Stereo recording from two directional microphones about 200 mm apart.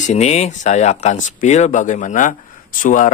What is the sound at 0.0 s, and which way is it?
Speech, 35° left (ahead or behind).